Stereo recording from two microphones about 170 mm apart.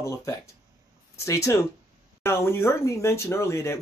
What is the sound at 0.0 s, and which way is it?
Speech, 15° left (ahead or behind).